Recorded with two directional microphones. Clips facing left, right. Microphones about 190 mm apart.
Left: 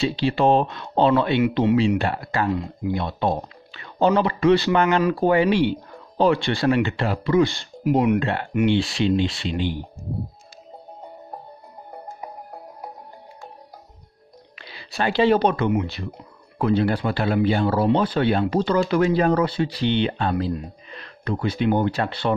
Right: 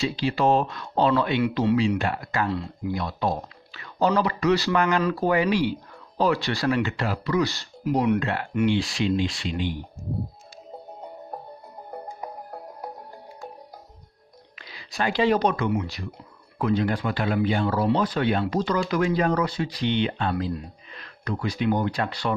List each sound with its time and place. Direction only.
0.0 s speech: 30° left (ahead or behind)
2.0 s speech: 30° left (ahead or behind)
14.6 s speech: 30° left (ahead or behind)